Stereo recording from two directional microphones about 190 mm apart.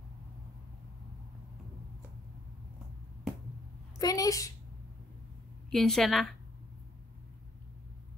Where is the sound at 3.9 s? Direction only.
20° left (ahead or behind).